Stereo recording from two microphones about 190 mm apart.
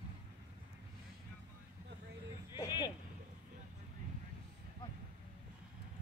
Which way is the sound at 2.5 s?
20° left (ahead or behind).